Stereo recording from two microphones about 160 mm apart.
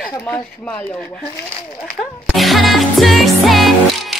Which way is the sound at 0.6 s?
5° left (ahead or behind).